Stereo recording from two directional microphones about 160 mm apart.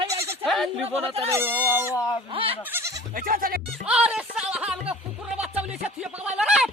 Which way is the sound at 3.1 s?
65° right (ahead or behind).